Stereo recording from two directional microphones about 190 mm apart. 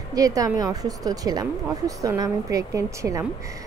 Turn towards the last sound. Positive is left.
turn(degrees=-15)  # may be behind; listen again after turning